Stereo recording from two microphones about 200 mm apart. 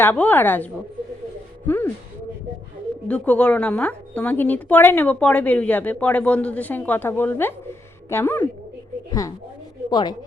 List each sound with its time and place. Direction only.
0.0 s a woman's voice: 10° left (ahead or behind)
1.6 s a sound: 10° left (ahead or behind)
3.1 s a woman's voice: 5° left (ahead or behind)